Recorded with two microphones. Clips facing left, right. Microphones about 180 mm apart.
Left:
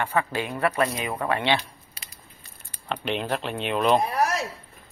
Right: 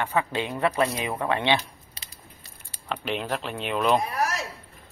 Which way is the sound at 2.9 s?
5° right (ahead or behind).